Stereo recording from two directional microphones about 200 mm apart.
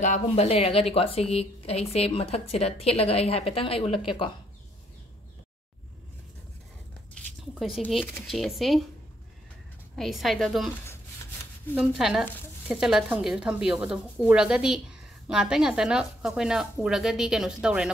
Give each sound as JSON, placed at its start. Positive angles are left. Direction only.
{"t": 0.0, "sound": "a woman's voice", "side_deg": 35}
{"t": 7.5, "sound": "a woman's voice", "side_deg": 0}
{"t": 9.9, "sound": "a woman's voice", "side_deg": 0}
{"t": 11.7, "sound": "a woman's voice", "side_deg": -5}